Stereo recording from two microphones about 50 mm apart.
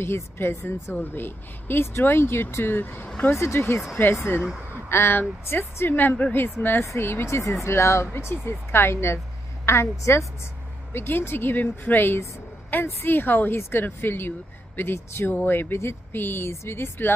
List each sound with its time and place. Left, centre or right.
0.0 s speech: left
0.9 s a woman's voice: left
3.3 s speech: left
3.9 s speech: left
4.8 s speech: left
5.9 s a woman's voice: left
7.0 s a woman's voice: left
8.5 s a woman's voice: left
10.9 s a woman's voice: left